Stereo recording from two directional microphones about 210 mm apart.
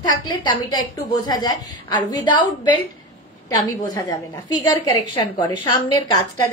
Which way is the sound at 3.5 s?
15° left (ahead or behind).